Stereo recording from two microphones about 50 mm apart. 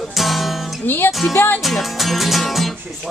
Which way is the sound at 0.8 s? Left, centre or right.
Left.